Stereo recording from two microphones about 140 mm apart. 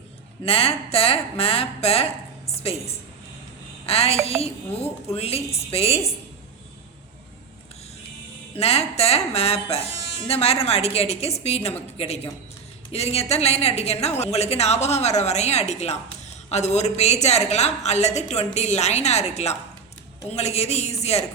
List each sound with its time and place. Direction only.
0.4 s a woman's voice: 45° left (ahead or behind)
8.5 s a woman's voice: 45° left (ahead or behind)